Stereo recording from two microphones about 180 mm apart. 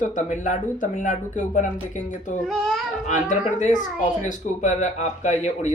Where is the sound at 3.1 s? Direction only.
45° left (ahead or behind).